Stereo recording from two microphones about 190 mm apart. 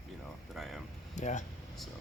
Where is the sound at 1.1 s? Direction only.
40° left (ahead or behind).